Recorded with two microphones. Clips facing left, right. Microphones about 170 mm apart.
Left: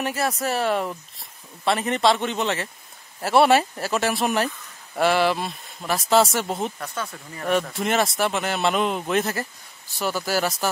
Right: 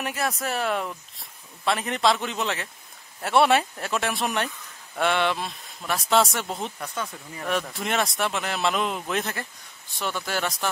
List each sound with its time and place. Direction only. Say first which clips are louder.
0.0 s speech: left 3 dB; centre (ahead or behind)
7.0 s speech: even; 15° right (ahead or behind)
7.4 s speech: left 5 dB; centre (ahead or behind)